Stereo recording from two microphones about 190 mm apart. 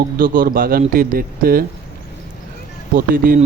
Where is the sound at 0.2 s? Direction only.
45° right (ahead or behind).